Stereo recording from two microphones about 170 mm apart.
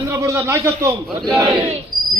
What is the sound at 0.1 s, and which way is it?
Speech, 15° right (ahead or behind).